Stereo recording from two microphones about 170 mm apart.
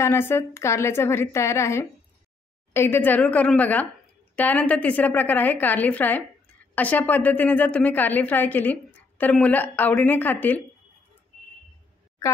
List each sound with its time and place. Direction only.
0.0 s a woman's voice: 15° left (ahead or behind)